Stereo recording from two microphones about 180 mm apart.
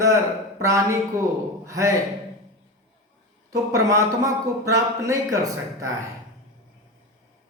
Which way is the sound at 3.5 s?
20° right (ahead or behind).